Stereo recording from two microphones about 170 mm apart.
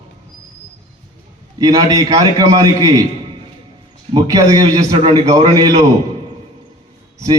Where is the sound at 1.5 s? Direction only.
20° right (ahead or behind).